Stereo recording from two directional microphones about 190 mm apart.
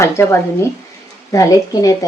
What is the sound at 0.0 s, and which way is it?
Speech, 15° left (ahead or behind).